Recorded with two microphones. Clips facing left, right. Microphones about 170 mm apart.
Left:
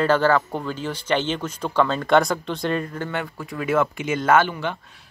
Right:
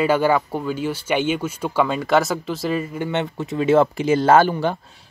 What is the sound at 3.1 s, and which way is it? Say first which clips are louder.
Speech: right 5 dB; 25° right (ahead or behind).